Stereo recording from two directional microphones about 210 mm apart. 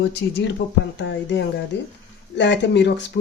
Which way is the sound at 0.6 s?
45° left (ahead or behind).